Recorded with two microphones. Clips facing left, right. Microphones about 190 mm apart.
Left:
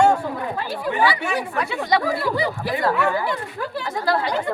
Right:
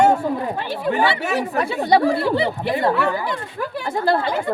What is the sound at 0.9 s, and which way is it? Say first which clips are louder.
Speech: right 2 dB; 35° right (ahead or behind).